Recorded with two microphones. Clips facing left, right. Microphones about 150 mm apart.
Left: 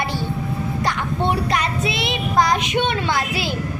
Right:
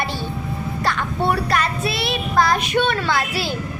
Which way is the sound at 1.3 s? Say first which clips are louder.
Right 2 dB; 20° left (ahead or behind).